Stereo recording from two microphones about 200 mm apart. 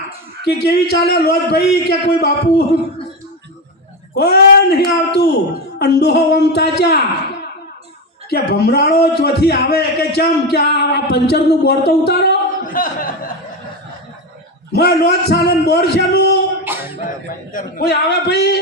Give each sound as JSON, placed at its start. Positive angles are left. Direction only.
{"t": 0.4, "sound": "a man's voice", "side_deg": 55}
{"t": 4.1, "sound": "a man's voice", "side_deg": 55}
{"t": 8.3, "sound": "a man's voice", "side_deg": 55}
{"t": 14.7, "sound": "a man's voice", "side_deg": 55}
{"t": 16.6, "sound": "music", "side_deg": -10}
{"t": 17.5, "sound": "a man's voice", "side_deg": 45}